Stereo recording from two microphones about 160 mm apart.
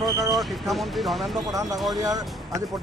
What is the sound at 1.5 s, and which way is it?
Speech, 20° right (ahead or behind).